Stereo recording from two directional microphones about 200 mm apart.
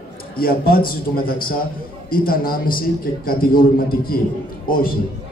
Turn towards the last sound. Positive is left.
turn(degrees=45)  # may be behind; listen again after turning